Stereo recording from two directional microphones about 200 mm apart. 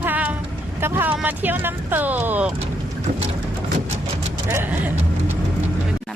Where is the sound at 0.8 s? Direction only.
10° right (ahead or behind).